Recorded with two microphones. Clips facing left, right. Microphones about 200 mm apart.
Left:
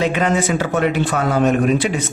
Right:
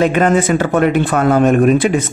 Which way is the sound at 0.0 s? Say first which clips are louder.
Right 5 dB; 50° right (ahead or behind).